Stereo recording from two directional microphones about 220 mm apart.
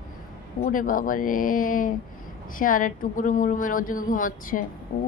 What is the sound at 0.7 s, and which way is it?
Speech, 40° left (ahead or behind).